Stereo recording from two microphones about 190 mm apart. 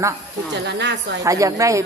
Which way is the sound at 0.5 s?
65° right (ahead or behind).